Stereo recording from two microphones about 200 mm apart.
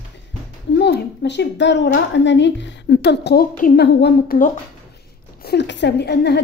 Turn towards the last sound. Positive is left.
turn(degrees=55)  # may be behind; listen again after turning